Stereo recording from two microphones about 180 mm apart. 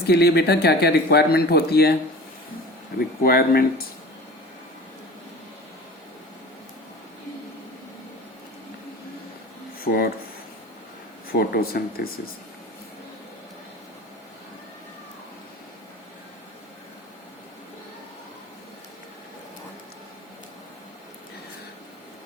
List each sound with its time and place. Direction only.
0.1 s speech: 65° left (ahead or behind)
3.0 s speech: 55° left (ahead or behind)
9.8 s speech: 55° left (ahead or behind)
11.3 s speech: 55° left (ahead or behind)